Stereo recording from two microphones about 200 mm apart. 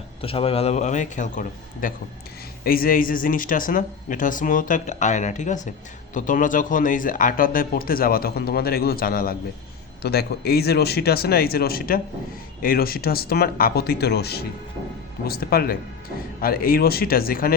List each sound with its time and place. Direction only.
0.2 s speech: 30° left (ahead or behind); by 17.5 s 45° left (ahead or behind)